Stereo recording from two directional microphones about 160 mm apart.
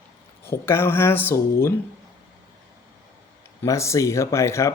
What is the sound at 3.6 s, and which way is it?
Speech, 20° left (ahead or behind).